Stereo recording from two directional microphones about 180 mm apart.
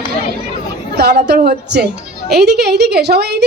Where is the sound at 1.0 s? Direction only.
65° right (ahead or behind).